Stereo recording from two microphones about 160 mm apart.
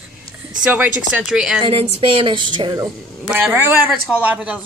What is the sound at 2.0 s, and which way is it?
Speech, 35° right (ahead or behind).